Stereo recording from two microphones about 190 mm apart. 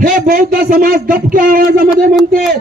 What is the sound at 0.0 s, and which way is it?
Speech, 45° right (ahead or behind).